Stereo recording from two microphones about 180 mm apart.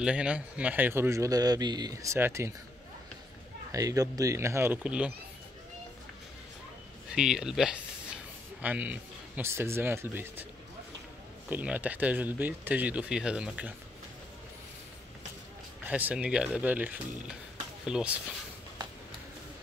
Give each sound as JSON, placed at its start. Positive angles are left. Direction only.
{"t": 0.0, "sound": "a man's voice", "side_deg": -5}
{"t": 3.7, "sound": "a man's voice", "side_deg": -20}
{"t": 7.2, "sound": "a man's voice", "side_deg": -5}
{"t": 11.5, "sound": "a man's voice", "side_deg": -10}
{"t": 15.9, "sound": "a man's voice", "side_deg": -10}